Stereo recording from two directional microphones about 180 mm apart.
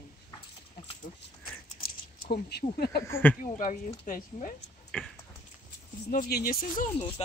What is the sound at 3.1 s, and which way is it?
Speech, 10° left (ahead or behind).